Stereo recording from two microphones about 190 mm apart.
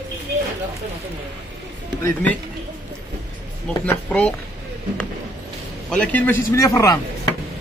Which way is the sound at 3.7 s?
10° left (ahead or behind).